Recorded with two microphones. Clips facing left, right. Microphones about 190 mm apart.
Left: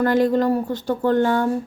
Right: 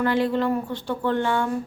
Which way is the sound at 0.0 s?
40° left (ahead or behind).